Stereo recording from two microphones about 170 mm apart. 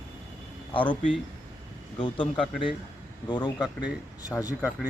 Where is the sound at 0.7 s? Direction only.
30° left (ahead or behind).